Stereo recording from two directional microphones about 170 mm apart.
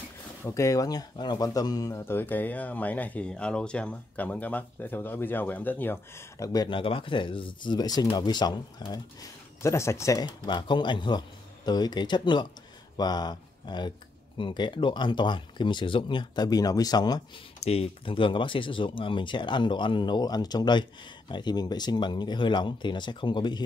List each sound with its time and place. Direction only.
0.4 s speech: 15° left (ahead or behind)
17.6 s speech: 35° left (ahead or behind)